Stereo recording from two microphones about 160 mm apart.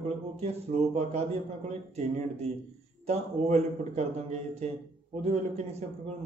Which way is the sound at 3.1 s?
45° right (ahead or behind).